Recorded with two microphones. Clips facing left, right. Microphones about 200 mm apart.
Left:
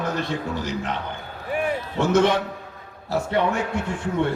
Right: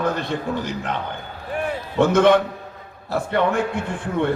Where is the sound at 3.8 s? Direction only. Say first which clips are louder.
Even; 55° right (ahead or behind).